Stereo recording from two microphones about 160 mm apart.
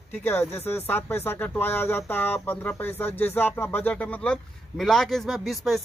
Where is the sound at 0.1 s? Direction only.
15° left (ahead or behind).